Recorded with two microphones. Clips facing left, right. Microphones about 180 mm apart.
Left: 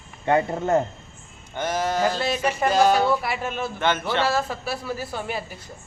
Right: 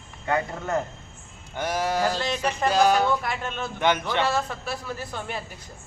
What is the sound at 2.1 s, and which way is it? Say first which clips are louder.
Speech: left 3 dB; 5° left (ahead or behind).